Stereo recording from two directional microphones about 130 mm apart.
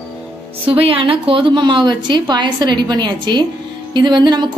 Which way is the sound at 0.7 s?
45° right (ahead or behind).